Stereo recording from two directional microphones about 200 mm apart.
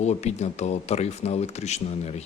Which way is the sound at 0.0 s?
35° left (ahead or behind).